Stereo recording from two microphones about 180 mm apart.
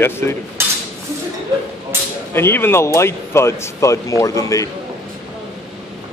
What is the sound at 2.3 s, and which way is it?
Speech, 15° left (ahead or behind).